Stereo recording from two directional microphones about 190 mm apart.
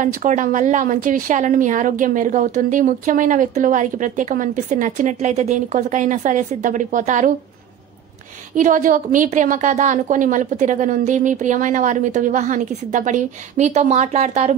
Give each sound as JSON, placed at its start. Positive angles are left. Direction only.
{"t": 0.0, "sound": "a woman's voice", "side_deg": -40}
{"t": 8.5, "sound": "a woman's voice", "side_deg": -40}